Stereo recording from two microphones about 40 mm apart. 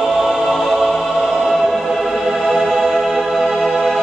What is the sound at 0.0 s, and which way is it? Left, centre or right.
Music, centre.